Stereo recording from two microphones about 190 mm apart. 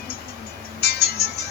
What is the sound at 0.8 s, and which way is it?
Music, 60° left (ahead or behind).